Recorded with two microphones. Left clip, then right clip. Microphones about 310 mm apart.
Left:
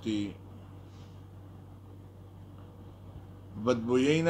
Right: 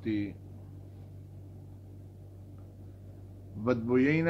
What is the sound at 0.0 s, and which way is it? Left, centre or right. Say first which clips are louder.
Speech: even; left.